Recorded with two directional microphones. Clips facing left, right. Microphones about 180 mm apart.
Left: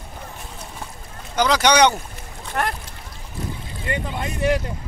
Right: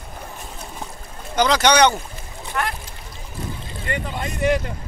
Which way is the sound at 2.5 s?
45° left (ahead or behind).